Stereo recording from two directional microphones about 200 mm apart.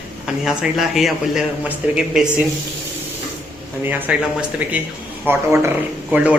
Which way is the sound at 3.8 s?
10° right (ahead or behind).